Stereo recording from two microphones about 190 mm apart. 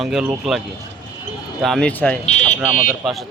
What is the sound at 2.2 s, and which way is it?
Speech, 35° left (ahead or behind).